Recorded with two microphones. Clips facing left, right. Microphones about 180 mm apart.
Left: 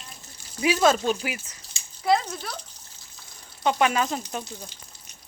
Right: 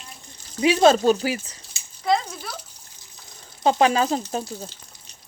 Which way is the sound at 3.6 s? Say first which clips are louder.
Right 4 dB; 30° right (ahead or behind).